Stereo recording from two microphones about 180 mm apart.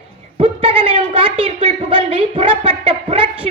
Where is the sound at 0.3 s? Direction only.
30° right (ahead or behind).